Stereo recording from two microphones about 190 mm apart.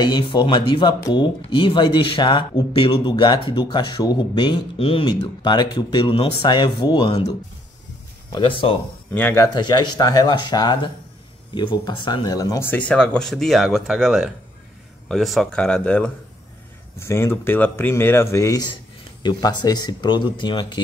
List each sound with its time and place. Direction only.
0.0 s speech: 25° left (ahead or behind)
8.3 s speech: 25° left (ahead or behind)
9.1 s speech: 10° left (ahead or behind)
9.5 s speech: 20° left (ahead or behind)